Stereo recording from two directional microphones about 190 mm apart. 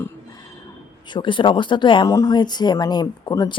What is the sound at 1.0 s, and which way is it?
Speech, 25° left (ahead or behind).